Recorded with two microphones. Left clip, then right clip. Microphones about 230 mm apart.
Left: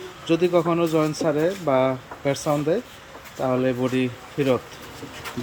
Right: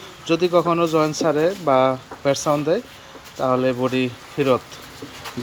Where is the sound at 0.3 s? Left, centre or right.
Centre.